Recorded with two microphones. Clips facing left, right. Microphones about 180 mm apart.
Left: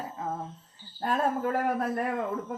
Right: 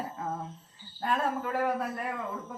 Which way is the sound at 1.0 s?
45° left (ahead or behind).